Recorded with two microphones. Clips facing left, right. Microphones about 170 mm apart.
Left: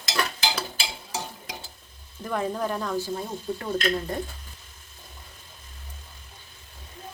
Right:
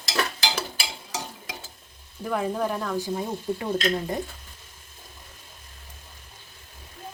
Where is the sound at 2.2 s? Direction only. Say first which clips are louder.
Right 1 dB; 5° right (ahead or behind).